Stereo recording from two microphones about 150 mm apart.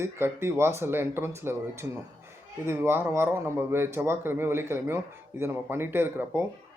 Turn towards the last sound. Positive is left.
turn(degrees=-15)  # may be behind; listen again after turning